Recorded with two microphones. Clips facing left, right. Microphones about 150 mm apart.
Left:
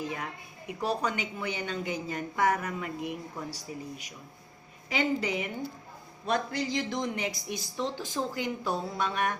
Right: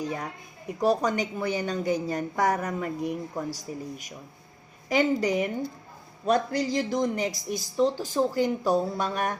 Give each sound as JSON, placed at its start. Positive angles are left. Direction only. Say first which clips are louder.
{"t": 0.0, "sound": "a woman's voice", "louder": "right 4 dB", "side_deg": -40}